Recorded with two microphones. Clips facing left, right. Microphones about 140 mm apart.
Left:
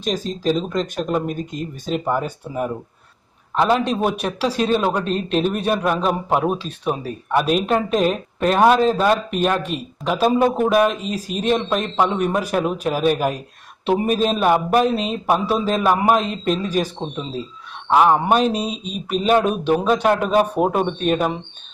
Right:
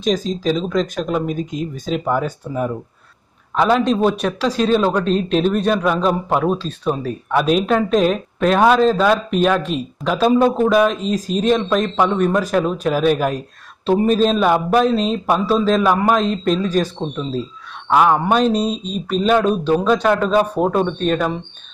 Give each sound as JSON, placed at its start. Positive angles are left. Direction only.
{"t": 0.0, "sound": "a man's voice", "side_deg": 5}
{"t": 17.0, "sound": "speech", "side_deg": 20}
{"t": 18.3, "sound": "a man's voice", "side_deg": 5}